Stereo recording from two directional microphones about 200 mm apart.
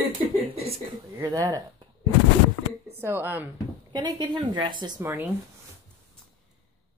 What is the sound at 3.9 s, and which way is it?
Speech, 20° right (ahead or behind).